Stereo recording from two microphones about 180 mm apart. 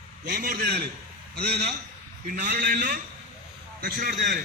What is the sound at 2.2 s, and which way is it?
A man's voice, 45° right (ahead or behind).